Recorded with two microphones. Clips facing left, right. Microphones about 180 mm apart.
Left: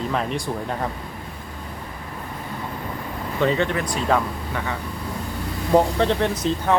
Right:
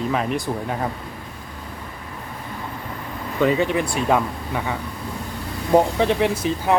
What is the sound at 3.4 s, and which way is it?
Speech, 10° right (ahead or behind).